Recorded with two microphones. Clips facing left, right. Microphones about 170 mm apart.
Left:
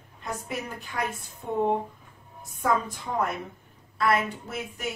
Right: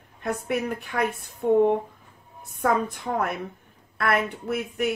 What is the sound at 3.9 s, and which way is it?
Speech, 60° right (ahead or behind).